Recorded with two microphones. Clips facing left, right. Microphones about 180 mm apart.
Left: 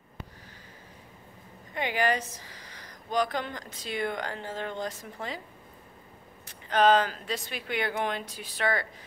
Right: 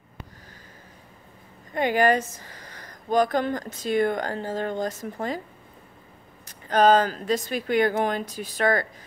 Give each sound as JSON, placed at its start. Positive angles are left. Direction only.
{"t": 1.7, "sound": "speech", "side_deg": -45}
{"t": 6.4, "sound": "speech", "side_deg": -40}